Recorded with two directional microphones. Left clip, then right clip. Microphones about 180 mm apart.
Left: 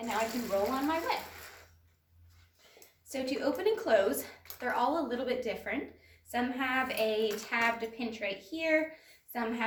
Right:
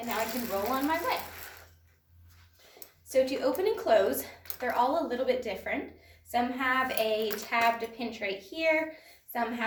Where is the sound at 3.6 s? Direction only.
15° left (ahead or behind).